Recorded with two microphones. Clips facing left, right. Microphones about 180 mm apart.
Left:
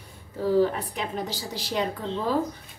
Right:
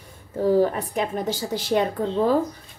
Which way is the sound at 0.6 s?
50° right (ahead or behind).